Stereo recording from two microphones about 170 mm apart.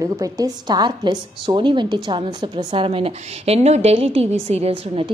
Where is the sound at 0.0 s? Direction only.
20° right (ahead or behind).